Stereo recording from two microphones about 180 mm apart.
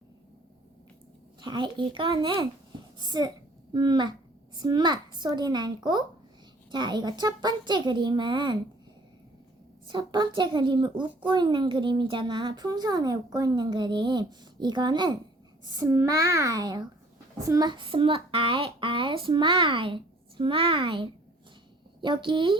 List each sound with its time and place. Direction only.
1.4 s a woman's voice: 25° right (ahead or behind)
9.8 s a woman's voice: 25° right (ahead or behind)